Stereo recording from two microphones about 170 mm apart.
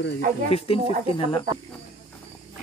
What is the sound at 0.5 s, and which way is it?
Speech, 35° left (ahead or behind).